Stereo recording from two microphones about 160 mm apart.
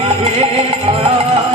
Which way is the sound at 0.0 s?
40° right (ahead or behind).